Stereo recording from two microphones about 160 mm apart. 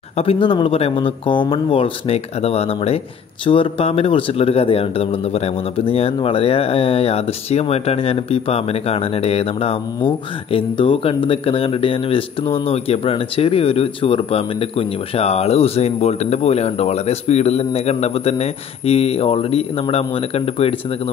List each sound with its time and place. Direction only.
0.2 s a man's voice: 35° left (ahead or behind)